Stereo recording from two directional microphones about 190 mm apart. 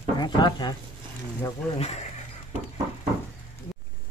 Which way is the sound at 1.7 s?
35° left (ahead or behind).